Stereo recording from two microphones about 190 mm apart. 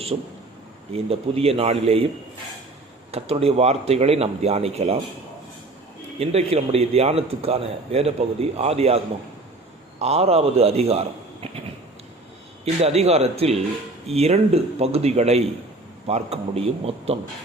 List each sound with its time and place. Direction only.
0.1 s a man's voice: 25° right (ahead or behind)
3.1 s a man's voice: 30° right (ahead or behind)
6.1 s a man's voice: 35° right (ahead or behind)
10.0 s a man's voice: 30° right (ahead or behind)
12.6 s a man's voice: 35° right (ahead or behind)